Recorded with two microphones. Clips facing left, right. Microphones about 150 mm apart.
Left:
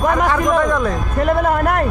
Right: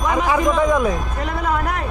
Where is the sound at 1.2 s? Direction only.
55° left (ahead or behind).